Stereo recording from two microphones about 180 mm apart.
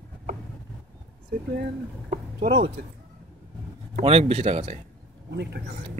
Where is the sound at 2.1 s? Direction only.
55° right (ahead or behind).